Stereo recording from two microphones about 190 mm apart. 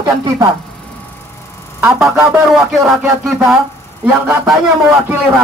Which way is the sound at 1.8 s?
5° right (ahead or behind).